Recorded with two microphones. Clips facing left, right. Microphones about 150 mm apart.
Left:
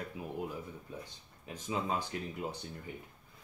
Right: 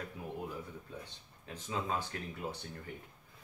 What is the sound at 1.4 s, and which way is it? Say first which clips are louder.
Speech: left 2 dB; 15° left (ahead or behind).